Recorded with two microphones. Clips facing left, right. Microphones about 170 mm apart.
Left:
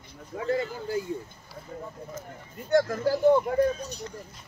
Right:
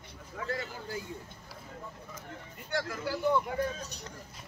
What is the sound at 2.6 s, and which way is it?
Speech, 45° left (ahead or behind).